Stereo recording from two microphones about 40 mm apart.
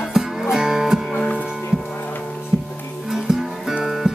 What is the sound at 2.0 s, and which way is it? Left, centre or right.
Heart sounds, left.